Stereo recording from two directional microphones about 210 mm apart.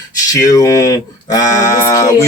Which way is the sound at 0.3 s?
15° left (ahead or behind).